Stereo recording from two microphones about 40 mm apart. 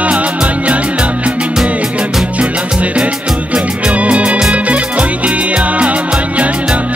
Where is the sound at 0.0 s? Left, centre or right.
Right.